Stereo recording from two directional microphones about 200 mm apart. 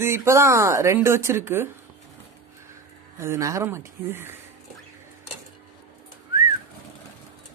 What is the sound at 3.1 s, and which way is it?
Speech, 15° right (ahead or behind).